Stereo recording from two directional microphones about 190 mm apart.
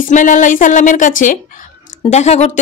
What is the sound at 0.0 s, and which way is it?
A woman's voice, 45° left (ahead or behind).